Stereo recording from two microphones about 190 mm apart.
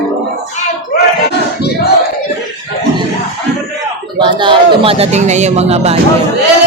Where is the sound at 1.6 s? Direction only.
55° left (ahead or behind).